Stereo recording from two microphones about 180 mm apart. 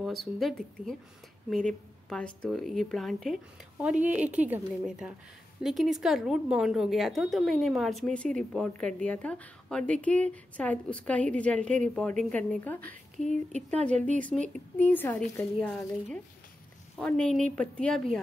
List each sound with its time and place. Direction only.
0.0 s a woman's voice: centre (ahead or behind)
13.9 s a woman's voice: 40° right (ahead or behind)
14.8 s a child's voice: 10° left (ahead or behind)